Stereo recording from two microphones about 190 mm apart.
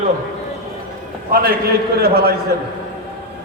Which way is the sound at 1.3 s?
50° right (ahead or behind).